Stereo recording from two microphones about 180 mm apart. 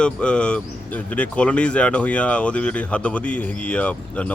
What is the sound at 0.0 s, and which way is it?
Speech, 5° left (ahead or behind).